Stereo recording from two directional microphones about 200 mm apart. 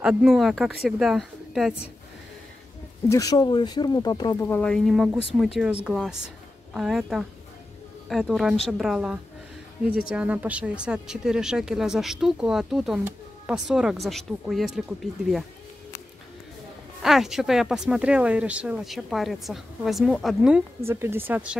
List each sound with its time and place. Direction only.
0.0 s speech: 5° right (ahead or behind)
3.1 s speech: 15° left (ahead or behind)
4.5 s speech: 5° left (ahead or behind)
17.0 s speech: centre (ahead or behind)